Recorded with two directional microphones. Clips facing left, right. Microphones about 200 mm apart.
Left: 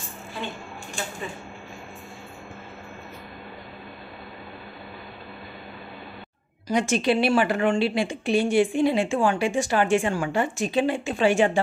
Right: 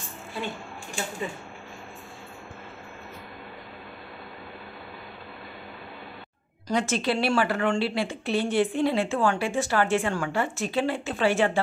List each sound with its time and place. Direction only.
6.7 s a woman's voice: 15° left (ahead or behind)